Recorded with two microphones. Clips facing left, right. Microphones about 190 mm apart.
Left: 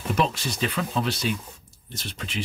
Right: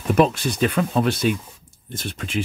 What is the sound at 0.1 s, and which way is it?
Speech, 55° right (ahead or behind).